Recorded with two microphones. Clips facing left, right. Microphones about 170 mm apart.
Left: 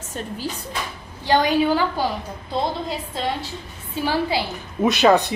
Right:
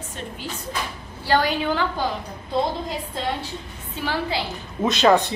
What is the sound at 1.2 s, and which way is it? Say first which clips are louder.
Speech: left 3 dB; 20° left (ahead or behind).